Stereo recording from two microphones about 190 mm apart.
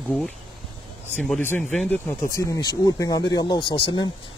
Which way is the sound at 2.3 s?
20° left (ahead or behind).